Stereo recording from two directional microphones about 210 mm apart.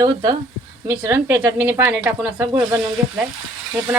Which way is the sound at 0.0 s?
20° right (ahead or behind).